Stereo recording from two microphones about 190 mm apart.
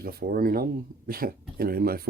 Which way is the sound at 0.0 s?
55° right (ahead or behind).